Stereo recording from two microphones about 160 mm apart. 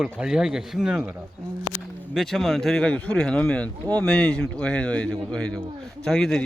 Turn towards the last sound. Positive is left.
turn(degrees=5)  # may be behind; listen again after turning